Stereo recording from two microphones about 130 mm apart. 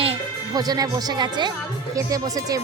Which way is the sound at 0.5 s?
30° right (ahead or behind).